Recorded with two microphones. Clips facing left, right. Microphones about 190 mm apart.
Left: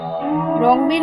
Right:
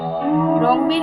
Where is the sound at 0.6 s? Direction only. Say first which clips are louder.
Left 2 dB; 15° left (ahead or behind).